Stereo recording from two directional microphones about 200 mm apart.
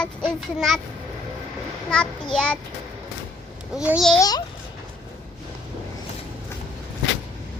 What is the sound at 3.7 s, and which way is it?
Child singing, 5° right (ahead or behind).